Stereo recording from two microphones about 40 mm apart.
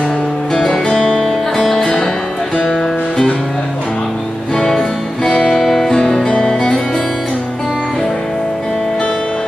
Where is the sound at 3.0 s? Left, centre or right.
Left; by 7.7 s centre.